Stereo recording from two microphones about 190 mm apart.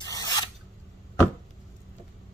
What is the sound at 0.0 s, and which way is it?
Filing, 20° left (ahead or behind).